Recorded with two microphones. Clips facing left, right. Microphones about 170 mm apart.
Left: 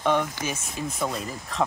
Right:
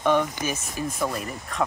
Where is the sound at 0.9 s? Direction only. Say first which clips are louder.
Even; centre (ahead or behind).